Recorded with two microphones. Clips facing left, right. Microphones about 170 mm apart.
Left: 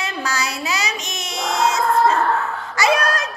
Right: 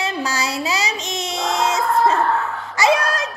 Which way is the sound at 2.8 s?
25° right (ahead or behind).